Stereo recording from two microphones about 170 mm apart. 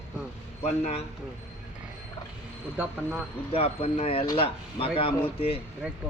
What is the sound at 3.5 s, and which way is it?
Speech, 35° left (ahead or behind).